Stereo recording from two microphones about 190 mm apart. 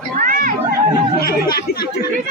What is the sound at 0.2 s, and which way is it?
Children playing, 45° right (ahead or behind).